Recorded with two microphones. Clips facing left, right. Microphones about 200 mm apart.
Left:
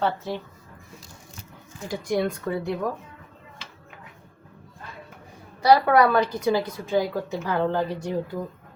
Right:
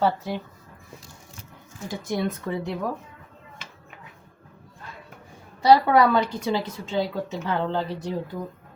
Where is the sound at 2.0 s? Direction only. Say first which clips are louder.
Left 2 dB; 25° right (ahead or behind).